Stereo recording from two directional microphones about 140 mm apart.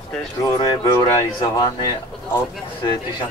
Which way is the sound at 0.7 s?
30° left (ahead or behind).